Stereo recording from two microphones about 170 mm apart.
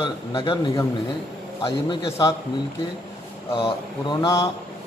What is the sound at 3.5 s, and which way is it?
Speech, 35° left (ahead or behind).